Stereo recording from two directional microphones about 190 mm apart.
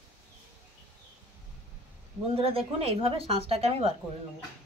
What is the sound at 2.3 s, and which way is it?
A woman's voice, 30° right (ahead or behind).